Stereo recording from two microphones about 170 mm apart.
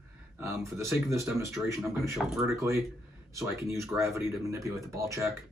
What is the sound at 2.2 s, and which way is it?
Speech, centre (ahead or behind).